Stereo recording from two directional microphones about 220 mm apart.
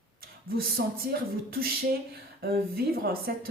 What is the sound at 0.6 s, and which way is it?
Speech, 45° right (ahead or behind).